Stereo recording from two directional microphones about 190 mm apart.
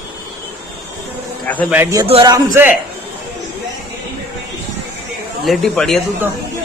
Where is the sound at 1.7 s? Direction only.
15° right (ahead or behind).